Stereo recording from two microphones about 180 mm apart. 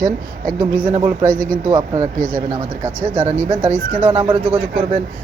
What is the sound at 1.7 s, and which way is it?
Speech, 20° right (ahead or behind).